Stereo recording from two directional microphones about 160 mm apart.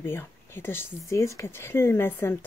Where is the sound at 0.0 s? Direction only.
15° left (ahead or behind).